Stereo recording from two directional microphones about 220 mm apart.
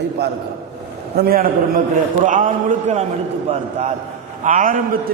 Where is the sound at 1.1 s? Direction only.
45° right (ahead or behind).